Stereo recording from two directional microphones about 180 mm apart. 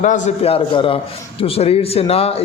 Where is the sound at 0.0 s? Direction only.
40° left (ahead or behind).